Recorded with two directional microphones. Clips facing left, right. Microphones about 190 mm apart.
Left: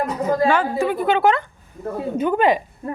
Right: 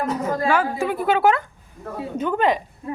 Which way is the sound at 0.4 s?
5° right (ahead or behind).